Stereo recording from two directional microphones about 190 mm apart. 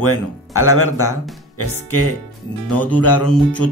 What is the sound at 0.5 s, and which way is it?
Speech, 90° left.